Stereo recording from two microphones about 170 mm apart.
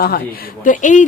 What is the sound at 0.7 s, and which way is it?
Speech, 50° left (ahead or behind).